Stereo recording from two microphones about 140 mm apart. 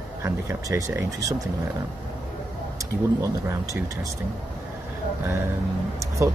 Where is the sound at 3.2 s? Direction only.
25° right (ahead or behind).